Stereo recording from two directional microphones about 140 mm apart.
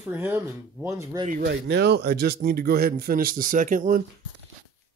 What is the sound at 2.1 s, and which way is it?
Speech, 90° right.